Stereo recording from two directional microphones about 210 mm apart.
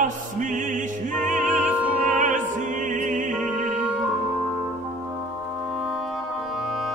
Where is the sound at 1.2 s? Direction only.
35° right (ahead or behind).